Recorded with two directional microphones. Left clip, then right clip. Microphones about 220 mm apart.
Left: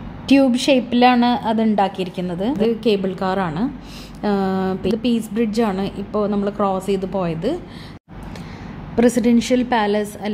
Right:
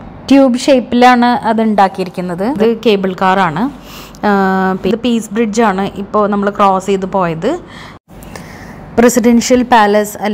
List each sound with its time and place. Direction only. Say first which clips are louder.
0.3 s a woman's voice: right 7 dB; 15° right (ahead or behind)
8.9 s a woman's voice: right 7 dB; 15° right (ahead or behind)